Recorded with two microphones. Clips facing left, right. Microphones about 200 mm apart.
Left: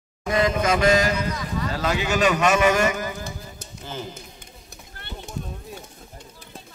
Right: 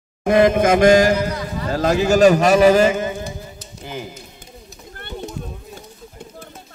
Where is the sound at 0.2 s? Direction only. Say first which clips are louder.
Right 8 dB; 55° right (ahead or behind).